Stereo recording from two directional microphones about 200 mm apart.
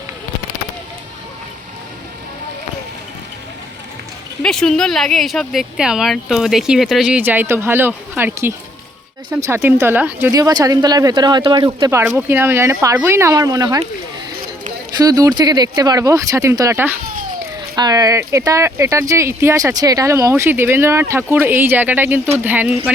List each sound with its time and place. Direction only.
4.4 s speech: centre (ahead or behind); by 13.8 s 20° right (ahead or behind)
14.9 s speech: 20° right (ahead or behind)